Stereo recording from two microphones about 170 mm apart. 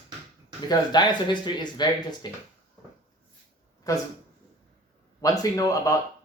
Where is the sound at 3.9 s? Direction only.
20° left (ahead or behind).